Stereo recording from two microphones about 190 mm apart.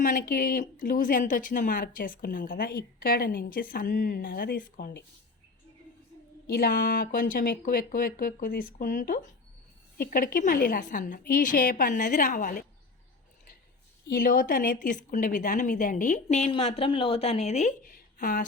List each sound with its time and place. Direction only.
0.0 s speech: 45° left (ahead or behind)
6.5 s speech: 50° left (ahead or behind)
14.1 s speech: 50° left (ahead or behind)